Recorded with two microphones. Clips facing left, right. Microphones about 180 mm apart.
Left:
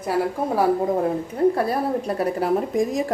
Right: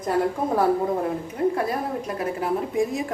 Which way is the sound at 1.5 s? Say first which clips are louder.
Left 3 dB; 35° left (ahead or behind).